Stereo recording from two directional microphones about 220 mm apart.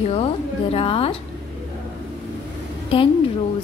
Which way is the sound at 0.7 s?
25° left (ahead or behind).